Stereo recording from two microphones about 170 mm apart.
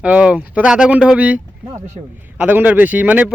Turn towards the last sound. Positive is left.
turn(degrees=-10)  # may be behind; listen again after turning